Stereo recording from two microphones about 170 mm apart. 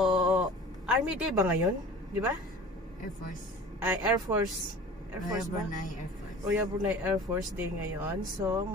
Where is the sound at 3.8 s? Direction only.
15° right (ahead or behind).